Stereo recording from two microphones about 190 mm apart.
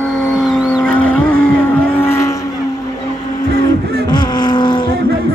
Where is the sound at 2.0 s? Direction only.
10° left (ahead or behind).